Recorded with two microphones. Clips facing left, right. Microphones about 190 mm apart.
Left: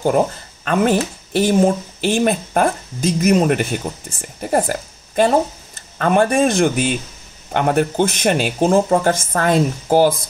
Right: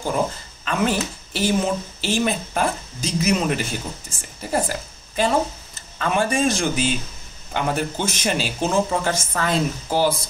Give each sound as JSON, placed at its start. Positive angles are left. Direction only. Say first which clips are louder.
{"t": 0.7, "sound": "a man's voice", "louder": "left 6 dB", "side_deg": 55}